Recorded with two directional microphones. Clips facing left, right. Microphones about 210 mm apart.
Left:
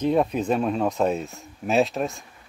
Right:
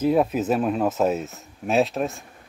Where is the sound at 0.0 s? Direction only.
5° right (ahead or behind).